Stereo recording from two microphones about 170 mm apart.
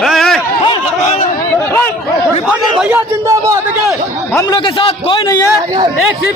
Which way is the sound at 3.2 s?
20° right (ahead or behind).